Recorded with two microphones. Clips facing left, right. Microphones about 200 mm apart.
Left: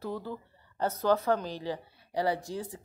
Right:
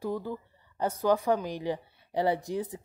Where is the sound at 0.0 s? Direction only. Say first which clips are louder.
Right 3 dB; 15° right (ahead or behind).